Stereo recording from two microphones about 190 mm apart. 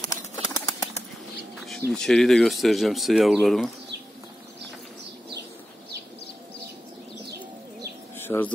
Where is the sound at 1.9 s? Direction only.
Centre (ahead or behind).